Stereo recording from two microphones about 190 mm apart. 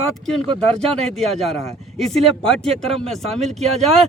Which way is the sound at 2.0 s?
35° right (ahead or behind).